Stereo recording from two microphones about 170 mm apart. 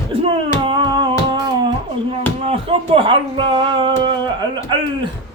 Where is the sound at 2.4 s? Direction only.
35° right (ahead or behind).